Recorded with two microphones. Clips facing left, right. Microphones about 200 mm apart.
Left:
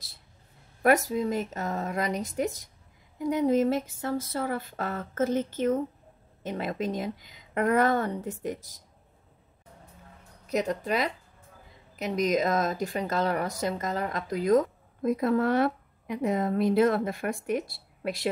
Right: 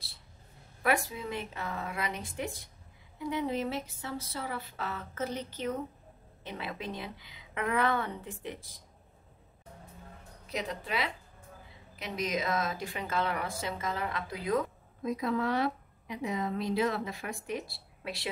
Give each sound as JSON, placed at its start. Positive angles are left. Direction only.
{"t": 0.8, "sound": "speech", "side_deg": 40}
{"t": 10.4, "sound": "speech", "side_deg": 45}